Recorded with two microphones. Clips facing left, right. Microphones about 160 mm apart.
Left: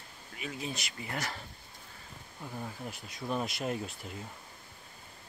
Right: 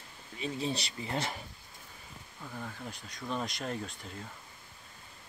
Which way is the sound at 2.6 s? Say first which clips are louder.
Left 1 dB; 5° left (ahead or behind).